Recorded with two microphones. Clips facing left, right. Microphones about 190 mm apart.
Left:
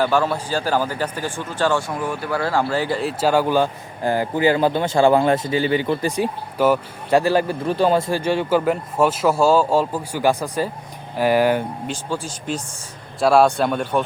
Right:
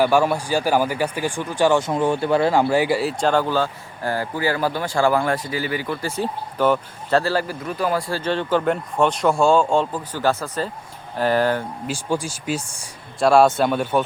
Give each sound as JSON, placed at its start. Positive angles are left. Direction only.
{"t": 0.0, "sound": "speech", "side_deg": -10}
{"t": 1.9, "sound": "speech", "side_deg": -25}
{"t": 7.6, "sound": "speech", "side_deg": 30}
{"t": 11.9, "sound": "speech", "side_deg": -10}